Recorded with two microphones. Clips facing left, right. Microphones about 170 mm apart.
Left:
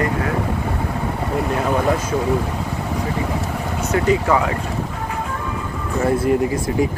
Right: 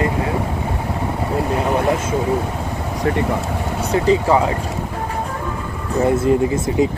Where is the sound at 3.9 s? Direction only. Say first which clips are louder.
Right 2 dB; 30° right (ahead or behind).